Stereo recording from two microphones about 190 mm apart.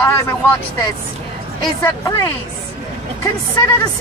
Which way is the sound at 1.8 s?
15° left (ahead or behind).